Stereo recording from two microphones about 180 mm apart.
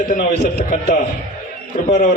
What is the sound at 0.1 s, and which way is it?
Speech, 50° left (ahead or behind).